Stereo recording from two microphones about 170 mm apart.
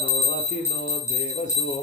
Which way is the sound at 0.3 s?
45° left (ahead or behind).